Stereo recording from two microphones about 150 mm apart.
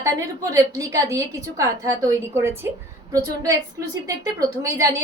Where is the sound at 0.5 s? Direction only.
20° right (ahead or behind).